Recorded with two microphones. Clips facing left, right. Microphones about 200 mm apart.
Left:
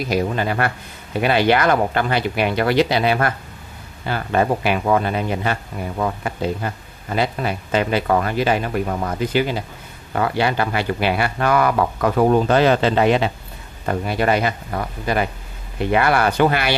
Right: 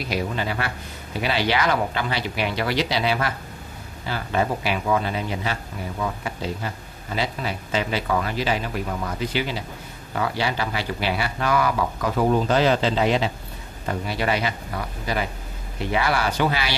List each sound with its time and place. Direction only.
0.0 s speech: 50° left (ahead or behind)